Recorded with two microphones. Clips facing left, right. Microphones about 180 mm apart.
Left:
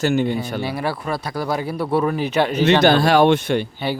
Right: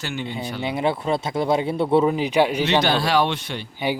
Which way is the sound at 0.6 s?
20° right (ahead or behind).